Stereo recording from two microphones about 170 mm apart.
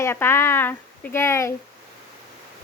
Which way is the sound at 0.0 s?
15° left (ahead or behind).